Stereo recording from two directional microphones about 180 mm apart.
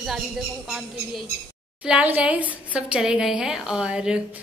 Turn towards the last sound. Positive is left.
turn(degrees=-5)  # may be behind; listen again after turning